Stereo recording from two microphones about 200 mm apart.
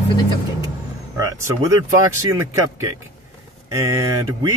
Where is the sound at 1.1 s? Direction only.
15° right (ahead or behind).